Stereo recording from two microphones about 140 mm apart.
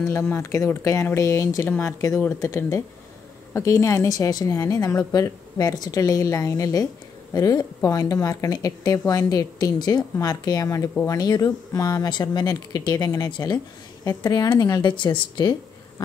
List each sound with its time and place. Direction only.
0.1 s a woman's voice: 20° left (ahead or behind)